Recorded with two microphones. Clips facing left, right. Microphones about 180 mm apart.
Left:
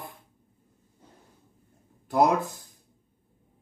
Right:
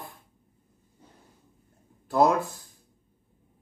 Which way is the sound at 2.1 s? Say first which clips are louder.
Even; 20° left (ahead or behind).